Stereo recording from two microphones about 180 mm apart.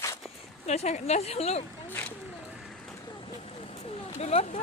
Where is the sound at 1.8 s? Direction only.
10° left (ahead or behind).